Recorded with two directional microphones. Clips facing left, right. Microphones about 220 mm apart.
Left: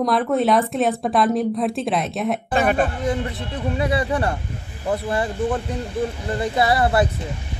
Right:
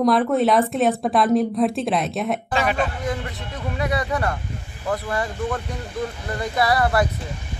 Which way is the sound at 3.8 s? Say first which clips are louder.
Left 2 dB; 30° left (ahead or behind).